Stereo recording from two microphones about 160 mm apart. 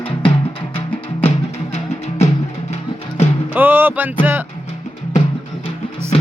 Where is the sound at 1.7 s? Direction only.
40° left (ahead or behind).